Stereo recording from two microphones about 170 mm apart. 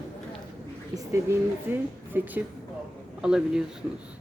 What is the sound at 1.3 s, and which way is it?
A woman's voice, 15° right (ahead or behind).